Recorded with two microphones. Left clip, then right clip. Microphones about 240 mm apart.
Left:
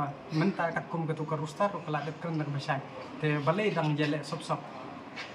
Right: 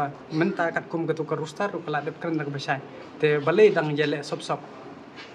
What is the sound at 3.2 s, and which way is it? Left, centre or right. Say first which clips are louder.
A man's voice: right 11 dB; right.